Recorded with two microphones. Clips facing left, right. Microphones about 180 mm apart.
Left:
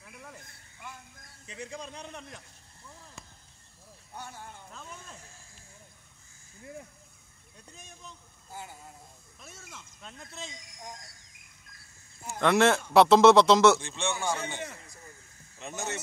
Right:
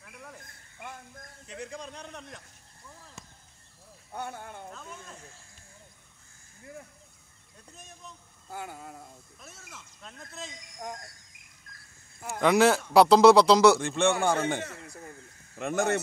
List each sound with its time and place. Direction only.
0.0 s a sound: centre (ahead or behind)
0.7 s a sound: 50° right (ahead or behind)
1.5 s speech: centre (ahead or behind)
4.1 s a man's voice: 60° right (ahead or behind)
7.6 s speech: centre (ahead or behind)
8.5 s a man's voice: 60° right (ahead or behind)
9.4 s speech: centre (ahead or behind)
10.8 s speech: 55° right (ahead or behind)
12.4 s speech: centre (ahead or behind)
13.7 s a man's voice: 55° right (ahead or behind)
14.9 s a sound: 60° right (ahead or behind)